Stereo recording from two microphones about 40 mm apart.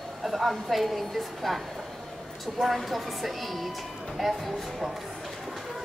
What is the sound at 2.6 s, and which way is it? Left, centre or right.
A woman's voice, centre.